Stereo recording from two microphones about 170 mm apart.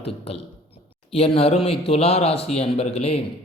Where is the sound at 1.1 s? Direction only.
35° left (ahead or behind).